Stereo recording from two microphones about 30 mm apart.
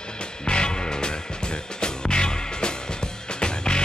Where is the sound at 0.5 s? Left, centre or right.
Left.